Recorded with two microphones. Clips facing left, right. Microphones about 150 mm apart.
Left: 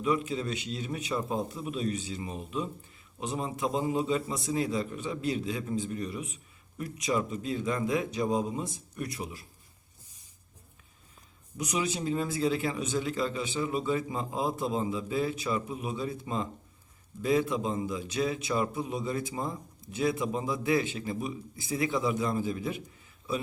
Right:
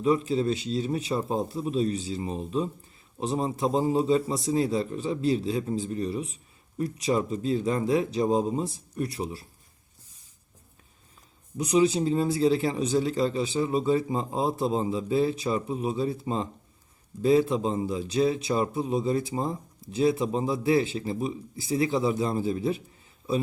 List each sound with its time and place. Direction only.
0.0 s a man's voice: 35° right (ahead or behind)
11.5 s a man's voice: 30° right (ahead or behind)